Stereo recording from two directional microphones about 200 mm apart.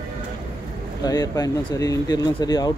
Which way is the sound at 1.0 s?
20° left (ahead or behind).